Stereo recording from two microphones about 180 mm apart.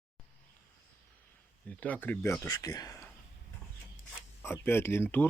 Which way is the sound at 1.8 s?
10° left (ahead or behind).